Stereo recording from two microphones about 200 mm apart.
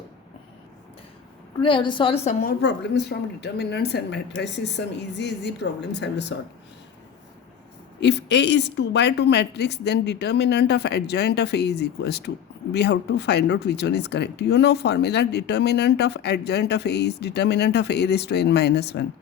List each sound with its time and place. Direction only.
1.6 s a woman's voice: 25° left (ahead or behind)
2.4 s speech: 50° left (ahead or behind)
8.0 s speech: 60° left (ahead or behind)